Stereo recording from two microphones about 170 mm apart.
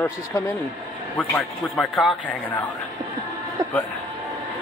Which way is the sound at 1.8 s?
Centre (ahead or behind).